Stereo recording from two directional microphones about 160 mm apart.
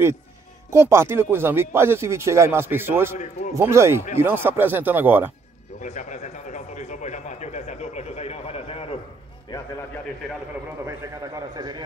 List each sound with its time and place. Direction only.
0.7 s speech: 15° right (ahead or behind)
5.8 s a man's voice: 50° left (ahead or behind)
11.5 s a man's voice: 25° right (ahead or behind)